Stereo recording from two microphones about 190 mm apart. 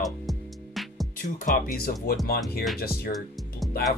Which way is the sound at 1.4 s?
50° left (ahead or behind).